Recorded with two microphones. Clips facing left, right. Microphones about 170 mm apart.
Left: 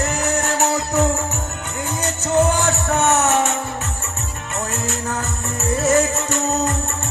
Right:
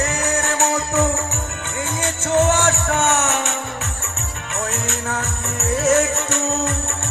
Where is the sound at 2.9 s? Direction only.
40° left (ahead or behind).